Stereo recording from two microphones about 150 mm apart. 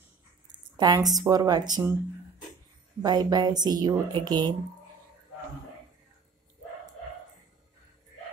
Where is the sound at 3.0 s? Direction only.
30° right (ahead or behind).